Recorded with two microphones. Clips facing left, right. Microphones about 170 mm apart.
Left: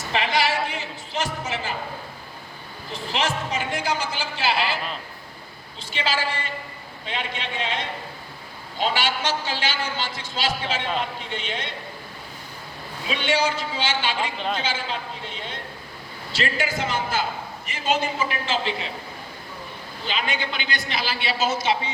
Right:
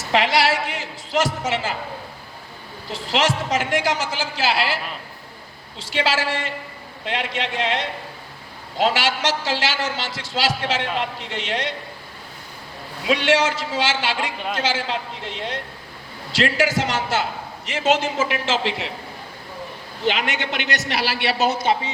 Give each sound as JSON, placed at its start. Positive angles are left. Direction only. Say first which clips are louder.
{"t": 0.1, "sound": "a man's voice", "louder": "right 4 dB", "side_deg": -90}
{"t": 2.9, "sound": "a man's voice", "louder": "right 5 dB", "side_deg": -90}
{"t": 5.8, "sound": "a man's voice", "louder": "right 4 dB", "side_deg": -90}
{"t": 13.1, "sound": "a man's voice", "louder": "right 5 dB", "side_deg": -90}
{"t": 20.1, "sound": "a man's voice", "louder": "right 5 dB", "side_deg": -80}